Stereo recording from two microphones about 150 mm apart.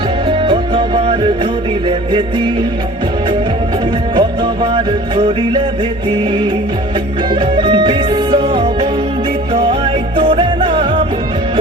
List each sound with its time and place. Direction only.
0.3 s music: 35° right (ahead or behind)
4.1 s music: 35° right (ahead or behind)
7.3 s music: 35° right (ahead or behind)